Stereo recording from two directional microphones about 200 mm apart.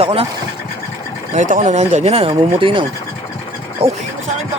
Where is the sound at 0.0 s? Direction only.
30° right (ahead or behind).